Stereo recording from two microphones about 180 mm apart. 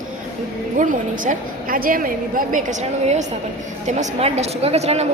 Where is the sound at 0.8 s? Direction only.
45° right (ahead or behind).